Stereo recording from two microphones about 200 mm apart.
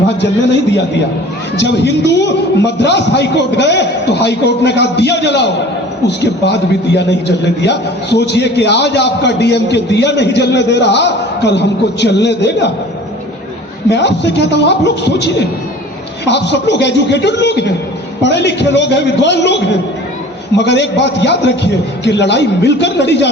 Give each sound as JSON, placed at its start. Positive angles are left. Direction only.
{"t": 0.1, "sound": "a man's voice", "side_deg": 60}
{"t": 13.9, "sound": "a man's voice", "side_deg": 60}